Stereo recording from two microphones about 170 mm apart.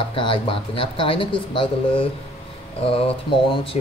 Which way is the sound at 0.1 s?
30° left (ahead or behind).